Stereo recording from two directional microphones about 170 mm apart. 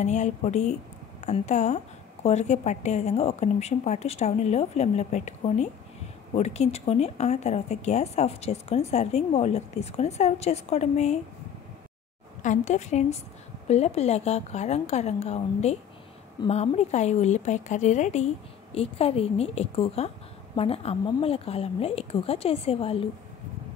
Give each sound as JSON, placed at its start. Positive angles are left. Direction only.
{"t": 0.0, "sound": "speech", "side_deg": 45}
{"t": 12.4, "sound": "speech", "side_deg": 45}